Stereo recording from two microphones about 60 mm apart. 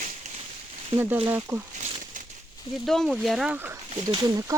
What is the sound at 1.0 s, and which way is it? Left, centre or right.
Speech, right.